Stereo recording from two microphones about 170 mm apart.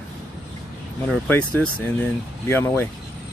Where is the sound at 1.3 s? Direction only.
10° left (ahead or behind).